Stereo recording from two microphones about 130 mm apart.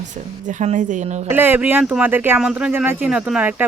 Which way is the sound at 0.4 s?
65° right (ahead or behind).